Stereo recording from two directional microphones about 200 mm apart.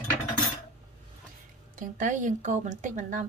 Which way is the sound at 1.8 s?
40° right (ahead or behind).